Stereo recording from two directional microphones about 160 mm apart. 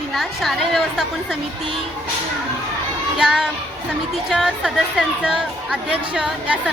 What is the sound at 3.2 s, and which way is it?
Speech, 5° right (ahead or behind).